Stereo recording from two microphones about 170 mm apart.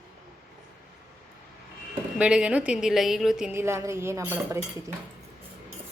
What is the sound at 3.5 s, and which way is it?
A woman's voice, 15° right (ahead or behind).